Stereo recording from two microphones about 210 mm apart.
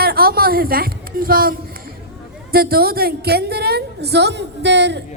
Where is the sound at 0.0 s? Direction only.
45° right (ahead or behind).